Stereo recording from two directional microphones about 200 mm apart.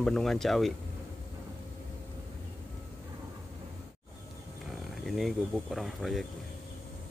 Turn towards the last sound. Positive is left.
turn(degrees=0)  # may be behind; listen again after turning